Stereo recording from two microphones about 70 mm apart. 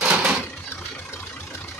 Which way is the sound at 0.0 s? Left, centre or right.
Centre.